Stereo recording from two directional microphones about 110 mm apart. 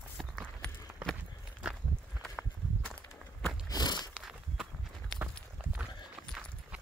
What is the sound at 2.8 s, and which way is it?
Walk, 15° left (ahead or behind).